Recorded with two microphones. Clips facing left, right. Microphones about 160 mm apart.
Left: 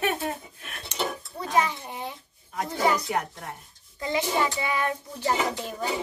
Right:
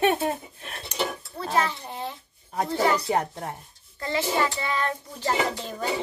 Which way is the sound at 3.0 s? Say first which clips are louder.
Right 4 dB; 30° right (ahead or behind).